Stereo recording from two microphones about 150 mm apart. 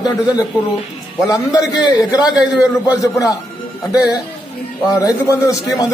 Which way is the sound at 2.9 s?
25° left (ahead or behind).